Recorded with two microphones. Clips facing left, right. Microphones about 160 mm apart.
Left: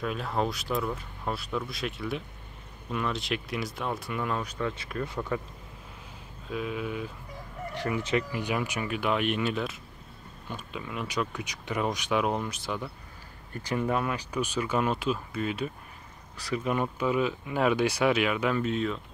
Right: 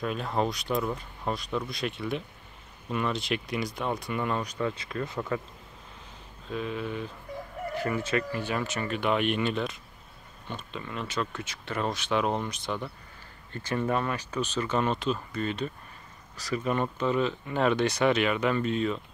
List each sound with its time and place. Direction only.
0.0 s speech: centre (ahead or behind)
6.5 s speech: 5° left (ahead or behind)
7.9 s speech: 15° left (ahead or behind); by 18.9 s centre (ahead or behind)